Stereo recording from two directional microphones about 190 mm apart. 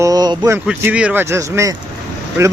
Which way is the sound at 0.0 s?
20° right (ahead or behind).